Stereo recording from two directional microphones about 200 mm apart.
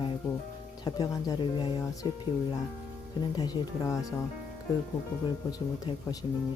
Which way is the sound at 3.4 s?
20° left (ahead or behind).